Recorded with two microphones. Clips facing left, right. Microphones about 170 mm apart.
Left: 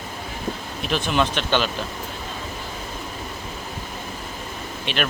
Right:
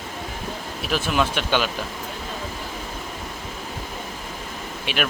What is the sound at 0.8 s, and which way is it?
Speech, 5° right (ahead or behind).